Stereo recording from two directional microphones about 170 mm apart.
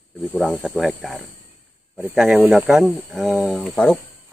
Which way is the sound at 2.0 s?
10° right (ahead or behind).